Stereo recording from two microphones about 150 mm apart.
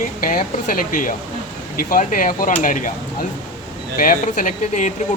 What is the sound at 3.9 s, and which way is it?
Speech, 60° left (ahead or behind).